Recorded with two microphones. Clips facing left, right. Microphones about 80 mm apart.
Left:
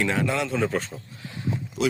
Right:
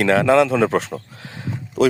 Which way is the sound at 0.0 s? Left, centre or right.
Right.